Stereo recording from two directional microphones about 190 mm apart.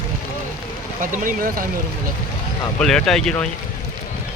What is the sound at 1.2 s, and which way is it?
Speech, 45° right (ahead or behind).